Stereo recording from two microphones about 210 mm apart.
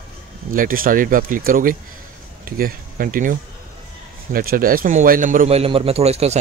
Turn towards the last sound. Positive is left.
turn(degrees=-30)  # may be behind; listen again after turning